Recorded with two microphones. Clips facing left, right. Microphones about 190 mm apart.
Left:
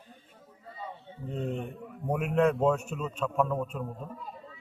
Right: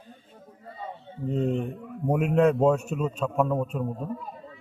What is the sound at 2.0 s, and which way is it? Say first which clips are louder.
A man's voice: right 4 dB; 30° right (ahead or behind).